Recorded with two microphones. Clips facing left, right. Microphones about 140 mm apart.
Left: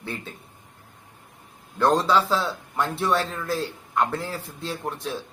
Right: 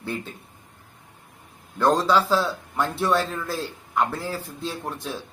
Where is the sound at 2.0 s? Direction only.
Centre (ahead or behind).